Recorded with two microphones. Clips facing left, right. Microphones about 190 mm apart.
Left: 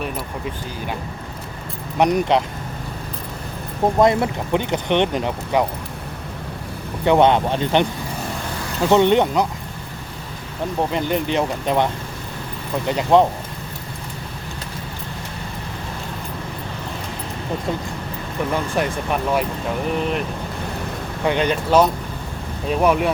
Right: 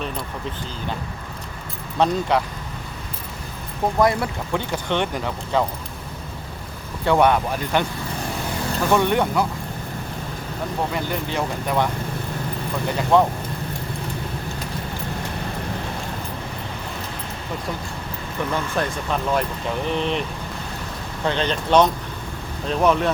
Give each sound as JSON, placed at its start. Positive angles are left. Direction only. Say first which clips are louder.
{"t": 2.0, "sound": "speech", "louder": "left 3 dB", "side_deg": 15}
{"t": 3.9, "sound": "speech", "louder": "left 3 dB", "side_deg": 20}
{"t": 7.0, "sound": "speech", "louder": "left 3 dB", "side_deg": 20}
{"t": 8.9, "sound": "speech", "louder": "left 5 dB", "side_deg": 20}
{"t": 10.9, "sound": "speech", "louder": "left 5 dB", "side_deg": 20}
{"t": 12.9, "sound": "speech", "louder": "left 3 dB", "side_deg": 20}
{"t": 18.5, "sound": "speech", "louder": "left 3 dB", "side_deg": 15}
{"t": 21.2, "sound": "speech", "louder": "left 3 dB", "side_deg": 10}